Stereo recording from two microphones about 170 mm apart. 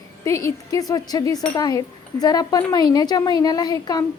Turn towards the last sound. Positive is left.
turn(degrees=25)  # may be behind; listen again after turning